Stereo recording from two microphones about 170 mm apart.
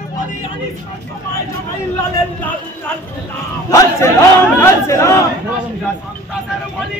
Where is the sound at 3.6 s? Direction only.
20° left (ahead or behind).